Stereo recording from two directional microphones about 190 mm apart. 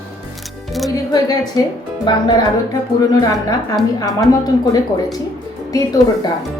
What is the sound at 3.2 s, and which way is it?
A woman's voice, 20° left (ahead or behind).